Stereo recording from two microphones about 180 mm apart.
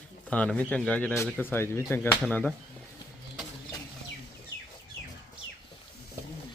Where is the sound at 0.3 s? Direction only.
10° left (ahead or behind).